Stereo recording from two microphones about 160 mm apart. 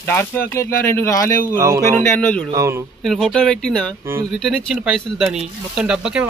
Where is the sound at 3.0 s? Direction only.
Centre (ahead or behind).